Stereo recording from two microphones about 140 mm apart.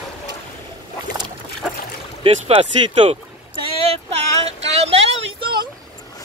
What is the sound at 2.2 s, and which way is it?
Speech, 45° right (ahead or behind).